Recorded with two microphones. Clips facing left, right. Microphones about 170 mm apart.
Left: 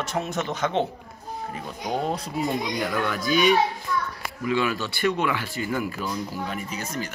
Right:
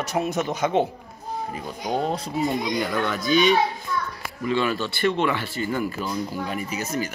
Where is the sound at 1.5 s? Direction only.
Centre (ahead or behind).